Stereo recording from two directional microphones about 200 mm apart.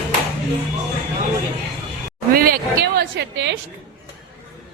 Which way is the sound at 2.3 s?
50° right (ahead or behind).